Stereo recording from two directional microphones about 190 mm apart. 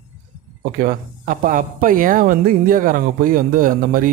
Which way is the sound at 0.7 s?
45° right (ahead or behind).